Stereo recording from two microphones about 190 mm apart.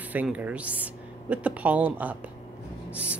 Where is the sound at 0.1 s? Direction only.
10° right (ahead or behind).